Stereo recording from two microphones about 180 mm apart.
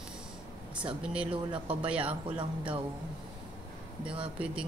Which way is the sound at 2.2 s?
30° right (ahead or behind).